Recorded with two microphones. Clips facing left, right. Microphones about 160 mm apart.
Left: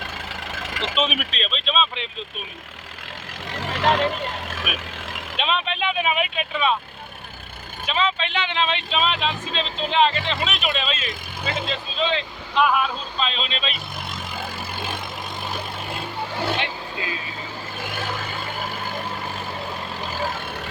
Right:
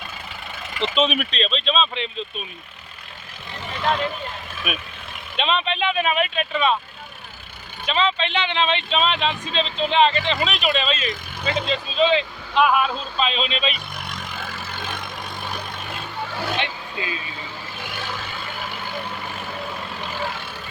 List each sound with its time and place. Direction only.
0.5 s vehicle: 90° left
0.9 s speech: 5° left (ahead or behind)
3.6 s speech: 90° left
5.4 s speech: 5° left (ahead or behind)
7.9 s speech: 5° left (ahead or behind)
14.1 s vehicle: 10° left (ahead or behind)